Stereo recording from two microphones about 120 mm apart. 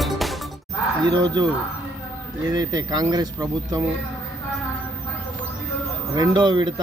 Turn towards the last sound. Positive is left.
turn(degrees=-40)  # may be behind; listen again after turning